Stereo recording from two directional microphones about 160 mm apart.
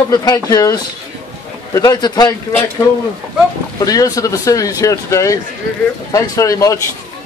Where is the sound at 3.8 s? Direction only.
20° left (ahead or behind).